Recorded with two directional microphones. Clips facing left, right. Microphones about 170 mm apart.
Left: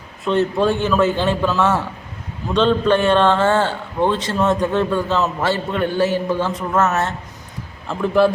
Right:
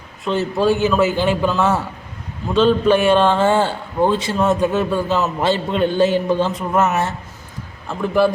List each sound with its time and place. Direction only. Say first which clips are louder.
0.3 s a man's voice: even; 5° right (ahead or behind)
7.9 s a man's voice: left 1 dB; centre (ahead or behind)